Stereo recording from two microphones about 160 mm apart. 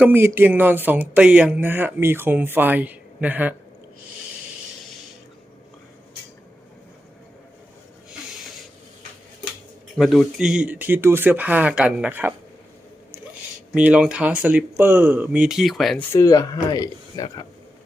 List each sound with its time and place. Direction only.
0.0 s speech: 15° right (ahead or behind)
9.9 s speech: centre (ahead or behind)
13.7 s speech: 10° right (ahead or behind)
16.1 s speech: 20° left (ahead or behind)